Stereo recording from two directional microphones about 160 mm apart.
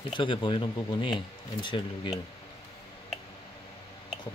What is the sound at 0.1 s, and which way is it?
Speech, 30° left (ahead or behind).